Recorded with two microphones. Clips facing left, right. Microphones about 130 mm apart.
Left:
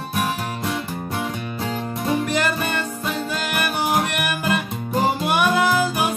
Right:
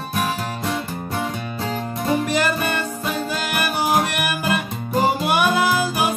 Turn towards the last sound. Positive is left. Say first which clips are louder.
# even
turn(degrees=-5)  # may be behind; listen again after turning